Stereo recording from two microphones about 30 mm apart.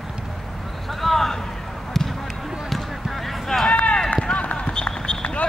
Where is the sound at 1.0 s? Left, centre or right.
Centre.